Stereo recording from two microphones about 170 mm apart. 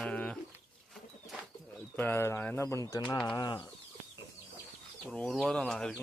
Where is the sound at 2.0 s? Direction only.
15° left (ahead or behind).